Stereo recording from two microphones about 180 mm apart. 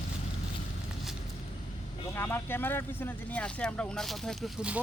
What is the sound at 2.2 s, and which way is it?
Speech, 10° left (ahead or behind).